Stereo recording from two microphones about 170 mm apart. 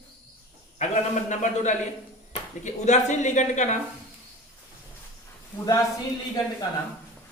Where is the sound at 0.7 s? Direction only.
45° left (ahead or behind).